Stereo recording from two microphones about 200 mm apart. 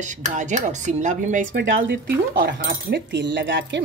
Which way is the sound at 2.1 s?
50° right (ahead or behind).